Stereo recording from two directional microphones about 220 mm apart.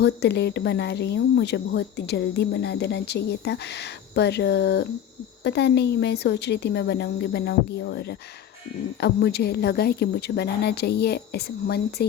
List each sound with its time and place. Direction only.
0.0 s speech: 50° left (ahead or behind)